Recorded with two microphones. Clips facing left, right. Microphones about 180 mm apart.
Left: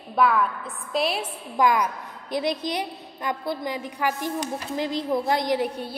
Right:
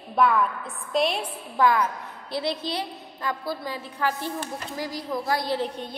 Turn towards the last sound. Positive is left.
turn(degrees=10)  # may be behind; listen again after turning